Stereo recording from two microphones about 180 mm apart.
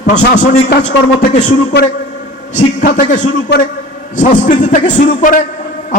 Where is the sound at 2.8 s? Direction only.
45° left (ahead or behind).